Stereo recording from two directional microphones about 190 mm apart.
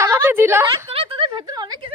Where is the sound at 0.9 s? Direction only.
30° right (ahead or behind).